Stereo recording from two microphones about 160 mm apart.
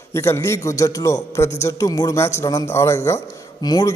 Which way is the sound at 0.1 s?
15° left (ahead or behind).